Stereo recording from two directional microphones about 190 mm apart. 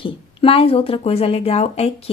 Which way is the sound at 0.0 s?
30° left (ahead or behind).